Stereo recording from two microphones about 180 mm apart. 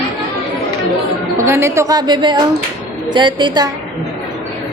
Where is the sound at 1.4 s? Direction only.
15° right (ahead or behind).